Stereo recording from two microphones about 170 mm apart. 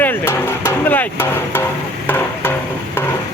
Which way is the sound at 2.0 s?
10° left (ahead or behind).